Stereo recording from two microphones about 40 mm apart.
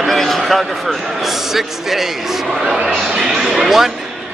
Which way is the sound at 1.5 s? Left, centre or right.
Centre.